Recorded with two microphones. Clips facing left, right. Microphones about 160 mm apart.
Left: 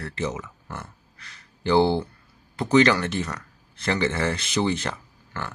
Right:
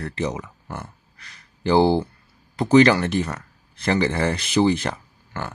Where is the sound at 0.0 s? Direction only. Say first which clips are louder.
Right 3 dB; 35° right (ahead or behind).